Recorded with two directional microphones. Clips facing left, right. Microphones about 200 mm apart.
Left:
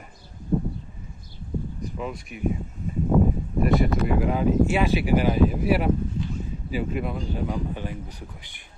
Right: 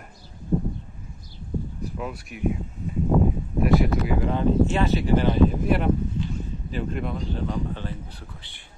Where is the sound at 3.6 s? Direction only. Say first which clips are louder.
Right 1 dB; centre (ahead or behind).